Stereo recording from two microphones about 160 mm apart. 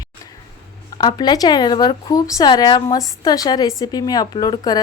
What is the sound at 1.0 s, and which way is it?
A woman's voice, 30° left (ahead or behind).